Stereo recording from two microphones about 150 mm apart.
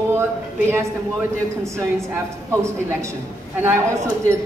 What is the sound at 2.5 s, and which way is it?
Speech, 20° right (ahead or behind).